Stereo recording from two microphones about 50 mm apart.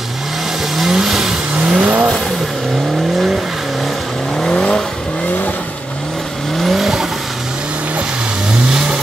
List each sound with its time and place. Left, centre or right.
0.7 s vehicle: centre
1.6 s vehicle: centre
4.4 s vehicle: centre
6.6 s vehicle: centre
8.6 s vehicle: centre